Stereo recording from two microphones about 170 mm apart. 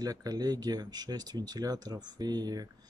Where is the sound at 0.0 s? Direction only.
20° right (ahead or behind).